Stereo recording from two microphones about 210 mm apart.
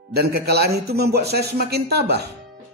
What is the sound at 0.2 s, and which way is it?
Speech, 50° right (ahead or behind).